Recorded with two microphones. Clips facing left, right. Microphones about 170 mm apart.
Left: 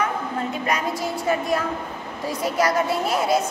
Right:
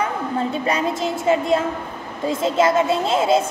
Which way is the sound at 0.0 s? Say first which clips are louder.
Right 3 dB; 30° right (ahead or behind).